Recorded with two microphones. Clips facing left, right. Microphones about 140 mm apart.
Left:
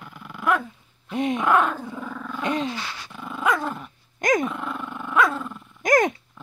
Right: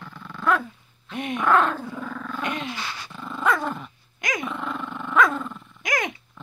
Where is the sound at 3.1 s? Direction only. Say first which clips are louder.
Even; 10° left (ahead or behind).